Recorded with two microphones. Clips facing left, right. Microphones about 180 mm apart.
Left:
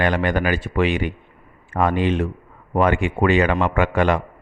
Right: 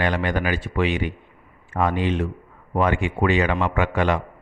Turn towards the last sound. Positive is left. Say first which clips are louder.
# left 3 dB
turn(degrees=55)  # may be behind; listen again after turning